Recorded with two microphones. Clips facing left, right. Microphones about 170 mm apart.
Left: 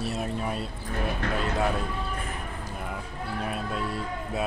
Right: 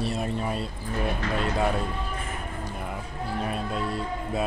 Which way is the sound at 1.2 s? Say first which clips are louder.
Even; 60° left (ahead or behind).